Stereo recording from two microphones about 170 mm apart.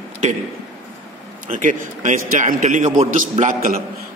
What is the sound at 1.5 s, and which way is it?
A man's voice, 50° right (ahead or behind).